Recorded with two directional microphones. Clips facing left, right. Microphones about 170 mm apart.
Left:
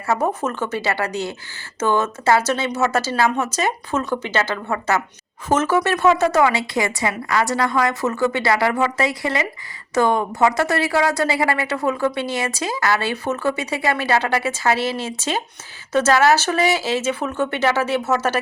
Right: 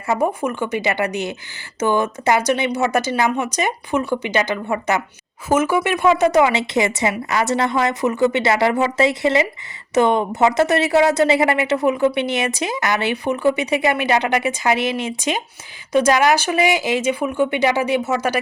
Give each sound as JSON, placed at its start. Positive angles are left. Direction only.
{"t": 0.1, "sound": "a woman's voice", "side_deg": -15}